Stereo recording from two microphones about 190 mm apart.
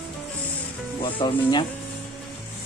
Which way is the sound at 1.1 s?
25° left (ahead or behind).